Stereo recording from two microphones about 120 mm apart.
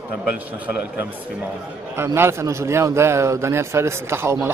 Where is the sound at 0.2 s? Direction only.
10° right (ahead or behind).